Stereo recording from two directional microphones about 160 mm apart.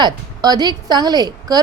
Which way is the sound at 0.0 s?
25° right (ahead or behind).